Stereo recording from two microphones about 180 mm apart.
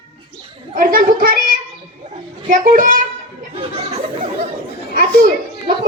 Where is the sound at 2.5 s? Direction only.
50° right (ahead or behind).